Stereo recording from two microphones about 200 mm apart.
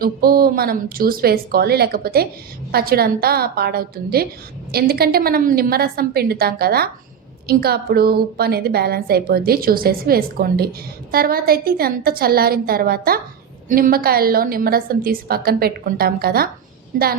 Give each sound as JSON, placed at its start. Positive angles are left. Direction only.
{"t": 0.0, "sound": "a woman's voice", "side_deg": -50}